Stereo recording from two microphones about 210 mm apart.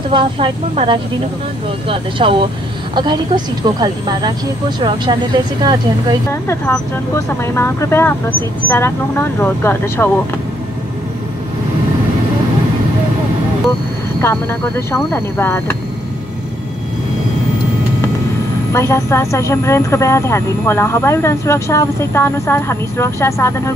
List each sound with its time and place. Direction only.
0.1 s speech: 25° right (ahead or behind)
6.4 s a woman's voice: 10° left (ahead or behind)
14.2 s a woman's voice: 10° left (ahead or behind)
18.7 s a woman's voice: 15° left (ahead or behind)